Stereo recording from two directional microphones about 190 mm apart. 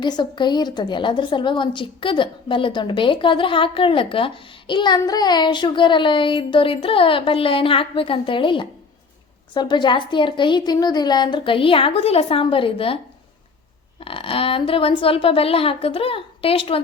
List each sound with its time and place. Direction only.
0.0 s a woman's voice: 25° left (ahead or behind)
14.0 s a woman's voice: 30° left (ahead or behind)